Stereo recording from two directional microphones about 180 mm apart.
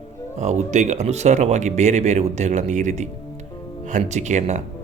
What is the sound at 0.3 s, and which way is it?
Speech, 40° right (ahead or behind).